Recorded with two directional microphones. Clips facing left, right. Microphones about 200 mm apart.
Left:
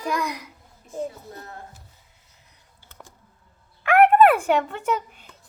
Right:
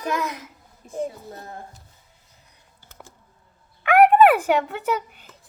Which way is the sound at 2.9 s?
5° right (ahead or behind).